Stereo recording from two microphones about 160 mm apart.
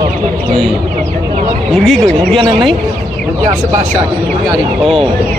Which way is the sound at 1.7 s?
Centre (ahead or behind).